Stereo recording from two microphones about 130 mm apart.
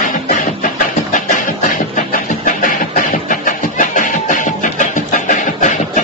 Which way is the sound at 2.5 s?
90° left.